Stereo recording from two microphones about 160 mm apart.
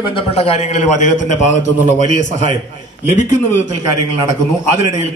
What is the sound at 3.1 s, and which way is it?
Speech, 50° left (ahead or behind).